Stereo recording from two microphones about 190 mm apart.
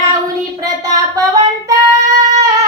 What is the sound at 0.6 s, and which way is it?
Child singing, 20° right (ahead or behind).